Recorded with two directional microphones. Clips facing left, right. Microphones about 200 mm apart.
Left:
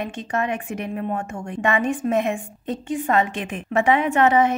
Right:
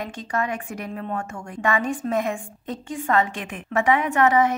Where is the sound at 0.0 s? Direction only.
20° left (ahead or behind).